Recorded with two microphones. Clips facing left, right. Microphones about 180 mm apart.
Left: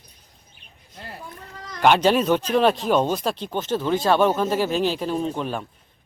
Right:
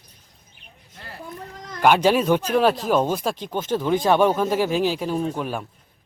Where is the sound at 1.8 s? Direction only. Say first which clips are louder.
Even; 10° right (ahead or behind).